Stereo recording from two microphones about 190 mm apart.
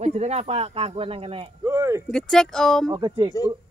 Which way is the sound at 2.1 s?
5° left (ahead or behind).